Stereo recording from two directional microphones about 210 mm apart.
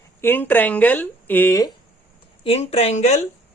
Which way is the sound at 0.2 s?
10° left (ahead or behind).